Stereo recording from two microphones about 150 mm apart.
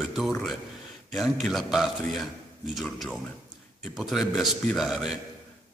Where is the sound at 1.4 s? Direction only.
Centre (ahead or behind).